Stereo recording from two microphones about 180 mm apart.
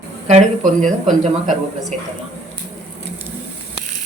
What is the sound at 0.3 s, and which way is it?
Speech, 40° right (ahead or behind).